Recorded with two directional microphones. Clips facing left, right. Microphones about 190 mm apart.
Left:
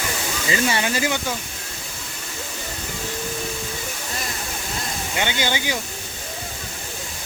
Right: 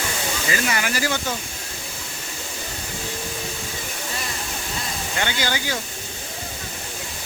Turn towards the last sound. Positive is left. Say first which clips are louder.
# left 1 dB
turn(degrees=20)  # may be behind; listen again after turning